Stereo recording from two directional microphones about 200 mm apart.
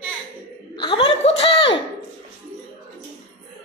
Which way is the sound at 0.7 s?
25° left (ahead or behind).